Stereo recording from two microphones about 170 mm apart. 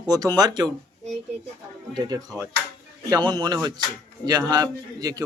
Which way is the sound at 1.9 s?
25° right (ahead or behind).